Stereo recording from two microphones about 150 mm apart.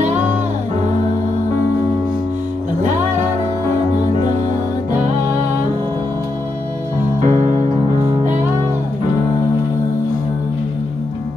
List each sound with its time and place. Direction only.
7.2 s music: 45° right (ahead or behind)